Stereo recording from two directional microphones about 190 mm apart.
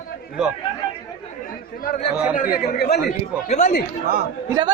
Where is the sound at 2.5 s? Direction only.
50° left (ahead or behind).